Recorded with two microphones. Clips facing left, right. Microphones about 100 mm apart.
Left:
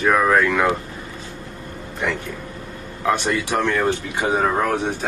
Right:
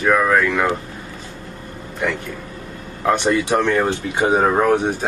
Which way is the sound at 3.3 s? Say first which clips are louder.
Right 4 dB; 25° right (ahead or behind).